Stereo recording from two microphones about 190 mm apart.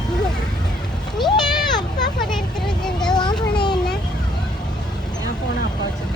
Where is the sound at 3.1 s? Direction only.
20° left (ahead or behind).